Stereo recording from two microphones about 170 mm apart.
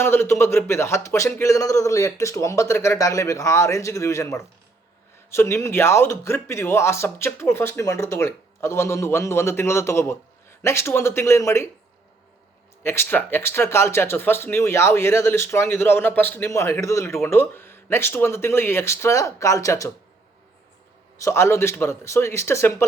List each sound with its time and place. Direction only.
0.0 s speech: 15° left (ahead or behind)
12.8 s speech: 15° left (ahead or behind)
21.2 s speech: 15° left (ahead or behind)